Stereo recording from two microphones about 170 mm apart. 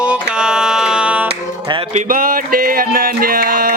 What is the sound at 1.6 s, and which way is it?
Music, 30° right (ahead or behind).